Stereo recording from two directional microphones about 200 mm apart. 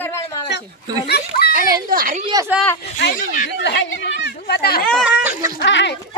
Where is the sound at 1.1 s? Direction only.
50° left (ahead or behind).